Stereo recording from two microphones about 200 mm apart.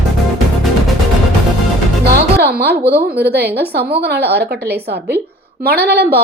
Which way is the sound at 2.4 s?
55° right (ahead or behind).